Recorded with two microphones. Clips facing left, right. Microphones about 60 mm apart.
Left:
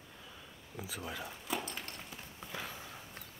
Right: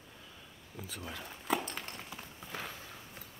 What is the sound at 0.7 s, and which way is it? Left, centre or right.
Speech, centre.